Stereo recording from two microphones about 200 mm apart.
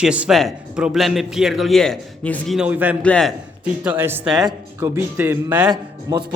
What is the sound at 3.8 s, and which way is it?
A man's voice, 10° right (ahead or behind).